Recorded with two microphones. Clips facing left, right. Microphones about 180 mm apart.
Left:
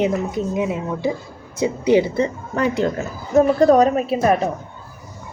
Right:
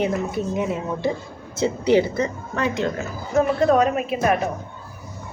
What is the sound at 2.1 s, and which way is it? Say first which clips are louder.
Speech: left 4 dB; 30° left (ahead or behind).